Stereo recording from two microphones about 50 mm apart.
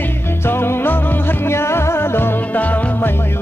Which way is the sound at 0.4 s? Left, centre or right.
Left.